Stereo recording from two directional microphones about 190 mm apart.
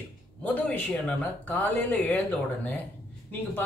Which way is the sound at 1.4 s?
10° left (ahead or behind).